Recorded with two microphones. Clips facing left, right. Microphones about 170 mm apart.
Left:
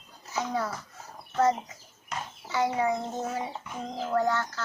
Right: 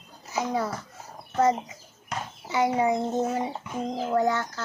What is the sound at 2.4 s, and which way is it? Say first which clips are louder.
A woman's voice: right 3 dB; 20° right (ahead or behind).